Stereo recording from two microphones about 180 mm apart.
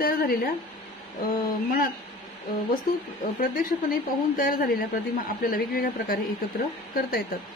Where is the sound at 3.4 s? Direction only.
50° left (ahead or behind).